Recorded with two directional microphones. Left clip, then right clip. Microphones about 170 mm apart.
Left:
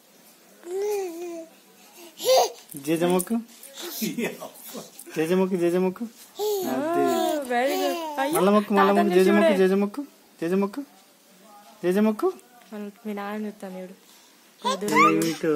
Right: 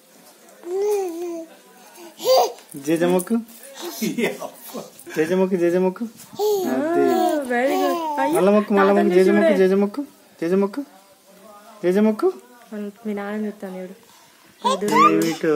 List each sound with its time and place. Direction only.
0.7 s babbling: 15° right (ahead or behind)
2.8 s speech: 20° left (ahead or behind)
3.7 s a sound: 15° right (ahead or behind)
5.1 s speech: 20° left (ahead or behind)
6.3 s babbling: 15° right (ahead or behind)
6.7 s speech: centre (ahead or behind)
7.1 s babbling: 15° right (ahead or behind)
7.4 s speech: centre (ahead or behind)
7.7 s a sound: 15° right (ahead or behind)
8.2 s speech: centre (ahead or behind)
9.6 s speech: 20° left (ahead or behind)
11.8 s speech: 20° left (ahead or behind)
12.7 s speech: 5° right (ahead or behind)
14.9 s a child's voice: 15° right (ahead or behind)